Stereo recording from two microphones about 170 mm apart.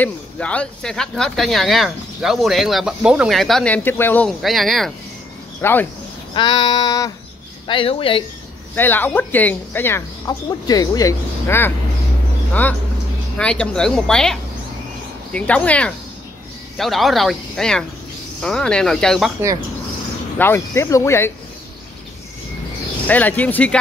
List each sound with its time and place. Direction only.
0.0 s speech: 5° left (ahead or behind)
4.4 s speech: centre (ahead or behind)
5.6 s a woman's voice: 10° left (ahead or behind)
6.3 s child singing: 25° left (ahead or behind)
7.6 s speech: 30° left (ahead or behind)
8.7 s a woman's voice: 10° left (ahead or behind)
13.4 s a woman's voice: 5° left (ahead or behind)
20.3 s a woman's voice: 15° left (ahead or behind)
23.0 s a woman's voice: 10° left (ahead or behind)